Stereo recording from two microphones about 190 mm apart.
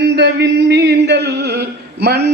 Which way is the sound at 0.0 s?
60° right (ahead or behind).